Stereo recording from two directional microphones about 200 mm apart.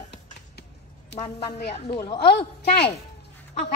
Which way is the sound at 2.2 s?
55° left (ahead or behind).